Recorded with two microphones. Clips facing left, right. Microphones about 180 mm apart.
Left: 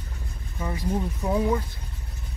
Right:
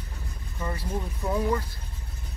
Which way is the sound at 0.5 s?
10° left (ahead or behind).